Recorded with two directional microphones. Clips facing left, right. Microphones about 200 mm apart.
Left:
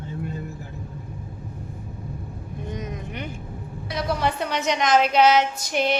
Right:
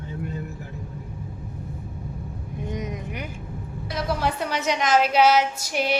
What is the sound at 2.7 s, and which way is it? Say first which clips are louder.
Vehicle: right 1 dB; 15° right (ahead or behind).